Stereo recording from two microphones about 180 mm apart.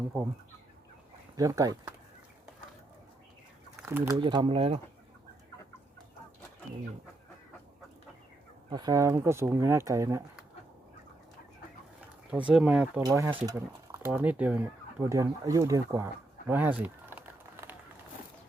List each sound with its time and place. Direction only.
1.4 s speech: 20° right (ahead or behind)
3.8 s speech: 15° right (ahead or behind)
4.2 s speech: 30° right (ahead or behind)
8.7 s speech: 20° right (ahead or behind)
12.5 s speech: 5° right (ahead or behind)
13.0 s speech: 20° right (ahead or behind)
16.5 s a sound: 10° right (ahead or behind)